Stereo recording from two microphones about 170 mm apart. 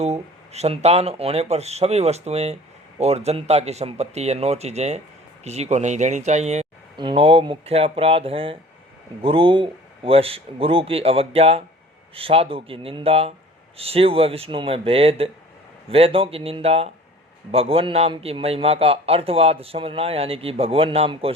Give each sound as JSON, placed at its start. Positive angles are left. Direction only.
{"t": 0.0, "sound": "speech", "side_deg": -40}
{"t": 6.9, "sound": "speech", "side_deg": -25}